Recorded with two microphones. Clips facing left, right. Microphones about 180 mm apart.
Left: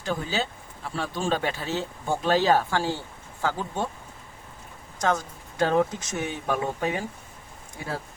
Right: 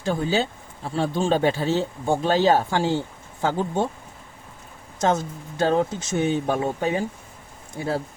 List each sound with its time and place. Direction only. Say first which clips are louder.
0.0 s speech: right 6 dB; 30° right (ahead or behind)
4.9 s speech: right 4 dB; 25° right (ahead or behind)